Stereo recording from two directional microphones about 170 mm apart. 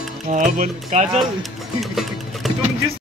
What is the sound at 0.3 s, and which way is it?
Speech, 45° right (ahead or behind).